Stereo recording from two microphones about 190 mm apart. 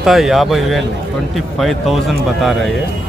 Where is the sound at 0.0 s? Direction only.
Centre (ahead or behind).